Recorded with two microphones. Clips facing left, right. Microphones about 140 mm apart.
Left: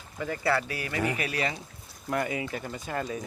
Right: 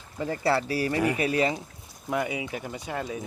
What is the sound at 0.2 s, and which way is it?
Speech, 30° right (ahead or behind).